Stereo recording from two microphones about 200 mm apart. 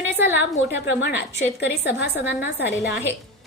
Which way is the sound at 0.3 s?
65° left (ahead or behind).